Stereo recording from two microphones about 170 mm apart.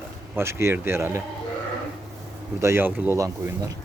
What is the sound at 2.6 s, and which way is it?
A man's voice, 15° right (ahead or behind).